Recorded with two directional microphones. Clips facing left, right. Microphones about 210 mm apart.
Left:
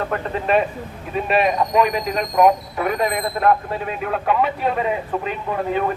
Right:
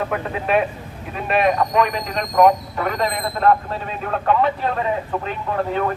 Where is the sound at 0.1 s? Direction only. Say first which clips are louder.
Left 1 dB; 5° right (ahead or behind).